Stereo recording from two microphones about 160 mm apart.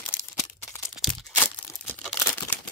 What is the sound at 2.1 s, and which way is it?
Crumpling, 15° left (ahead or behind).